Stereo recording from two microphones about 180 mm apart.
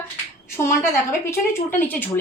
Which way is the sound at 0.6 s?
15° left (ahead or behind).